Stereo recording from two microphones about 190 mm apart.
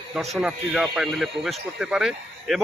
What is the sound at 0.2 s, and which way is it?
Speech, centre (ahead or behind).